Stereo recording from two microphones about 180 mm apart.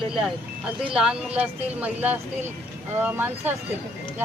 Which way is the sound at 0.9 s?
5° right (ahead or behind).